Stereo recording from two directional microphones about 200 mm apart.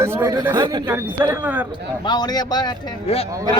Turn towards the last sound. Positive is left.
turn(degrees=30)  # may be behind; listen again after turning